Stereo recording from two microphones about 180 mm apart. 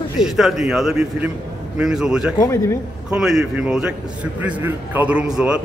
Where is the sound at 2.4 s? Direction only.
15° left (ahead or behind).